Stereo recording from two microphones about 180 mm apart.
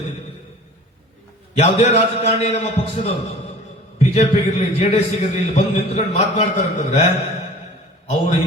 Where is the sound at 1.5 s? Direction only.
35° left (ahead or behind).